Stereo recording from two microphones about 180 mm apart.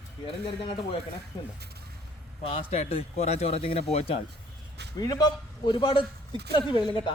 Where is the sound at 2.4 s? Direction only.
35° left (ahead or behind).